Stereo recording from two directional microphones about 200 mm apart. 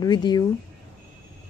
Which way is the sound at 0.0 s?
20° left (ahead or behind).